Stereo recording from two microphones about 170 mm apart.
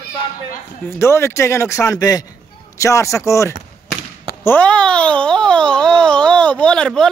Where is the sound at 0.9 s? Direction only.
15° left (ahead or behind).